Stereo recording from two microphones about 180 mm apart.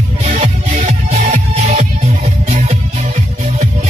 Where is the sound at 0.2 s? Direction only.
35° right (ahead or behind).